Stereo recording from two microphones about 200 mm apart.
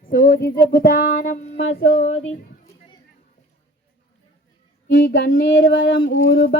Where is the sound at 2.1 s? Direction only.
85° left.